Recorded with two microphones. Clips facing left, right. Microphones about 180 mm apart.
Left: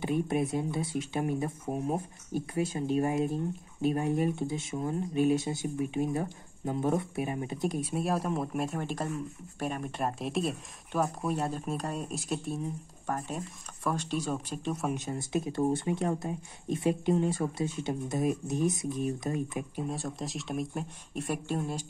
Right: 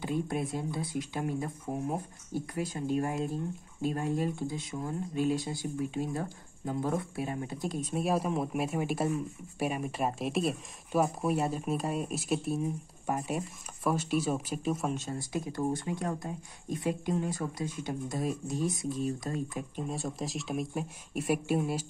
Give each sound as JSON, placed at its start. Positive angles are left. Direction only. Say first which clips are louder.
{"t": 0.0, "sound": "speech", "louder": "left 3 dB", "side_deg": 20}
{"t": 7.9, "sound": "speech", "louder": "right 1 dB", "side_deg": 0}
{"t": 14.9, "sound": "speech", "louder": "left 2 dB", "side_deg": 15}
{"t": 19.8, "sound": "speech", "louder": "right 1 dB", "side_deg": 0}